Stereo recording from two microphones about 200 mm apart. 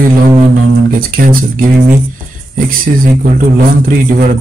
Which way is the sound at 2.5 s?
45° right (ahead or behind).